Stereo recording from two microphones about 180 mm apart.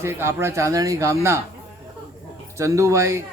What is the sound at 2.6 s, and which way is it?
Speech, 15° right (ahead or behind).